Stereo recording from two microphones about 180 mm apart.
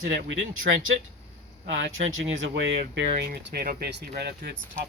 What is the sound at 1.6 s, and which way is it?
Speech, 90° right.